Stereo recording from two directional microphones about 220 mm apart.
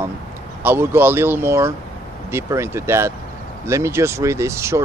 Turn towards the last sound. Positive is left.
turn(degrees=-10)  # may be behind; listen again after turning